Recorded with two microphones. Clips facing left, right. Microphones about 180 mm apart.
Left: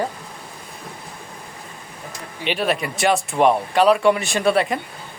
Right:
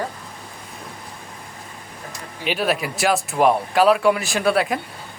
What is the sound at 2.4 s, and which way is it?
Speech, centre (ahead or behind).